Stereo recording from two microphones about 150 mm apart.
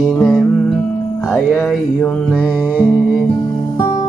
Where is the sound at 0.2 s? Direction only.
Centre (ahead or behind).